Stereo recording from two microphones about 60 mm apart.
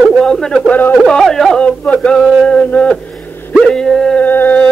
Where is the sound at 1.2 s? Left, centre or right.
Centre.